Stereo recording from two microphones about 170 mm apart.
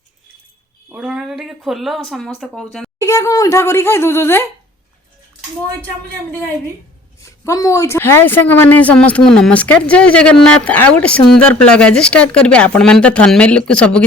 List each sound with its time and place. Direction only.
0.9 s speech: 5° right (ahead or behind)
3.0 s a woman's voice: 20° left (ahead or behind)
7.2 s a woman's voice: 20° left (ahead or behind)